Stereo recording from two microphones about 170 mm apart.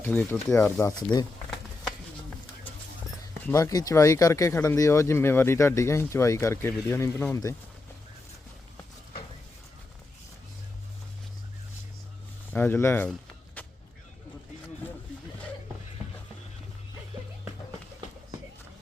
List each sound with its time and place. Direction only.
0.0 s speech: 10° left (ahead or behind)
3.5 s speech: 20° left (ahead or behind)
12.5 s speech: 15° left (ahead or behind)